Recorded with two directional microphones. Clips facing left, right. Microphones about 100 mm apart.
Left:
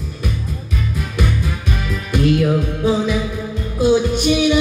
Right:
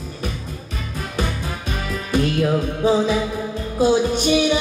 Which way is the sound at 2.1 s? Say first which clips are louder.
Left 3 dB; 30° right (ahead or behind).